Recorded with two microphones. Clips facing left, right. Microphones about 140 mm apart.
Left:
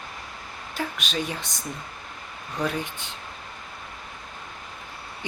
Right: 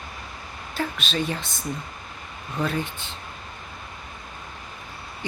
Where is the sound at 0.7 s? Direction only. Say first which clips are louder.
Right 2 dB; 15° left (ahead or behind).